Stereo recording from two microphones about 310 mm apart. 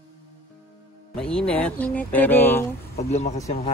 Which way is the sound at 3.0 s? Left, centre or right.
Left.